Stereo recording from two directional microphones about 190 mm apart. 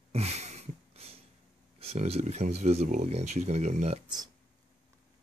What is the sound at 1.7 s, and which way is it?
Speech, 35° right (ahead or behind).